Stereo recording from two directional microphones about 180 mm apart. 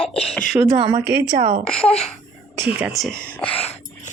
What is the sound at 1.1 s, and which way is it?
Speech, 65° right (ahead or behind).